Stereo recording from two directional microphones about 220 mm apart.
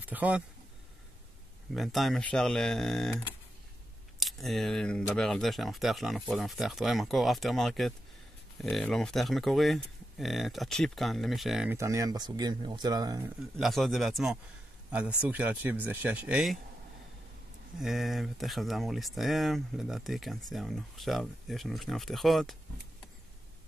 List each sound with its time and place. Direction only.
0.0 s speech: 5° right (ahead or behind)
1.7 s speech: centre (ahead or behind)
4.2 s speech: centre (ahead or behind)
11.7 s speech: 15° right (ahead or behind)
13.4 s speech: centre (ahead or behind)
17.7 s speech: centre (ahead or behind)